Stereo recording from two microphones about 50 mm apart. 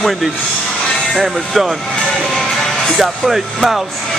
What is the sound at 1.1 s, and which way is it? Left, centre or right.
Speech, centre.